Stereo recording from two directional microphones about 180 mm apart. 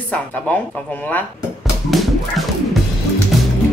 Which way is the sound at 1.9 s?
Centre (ahead or behind).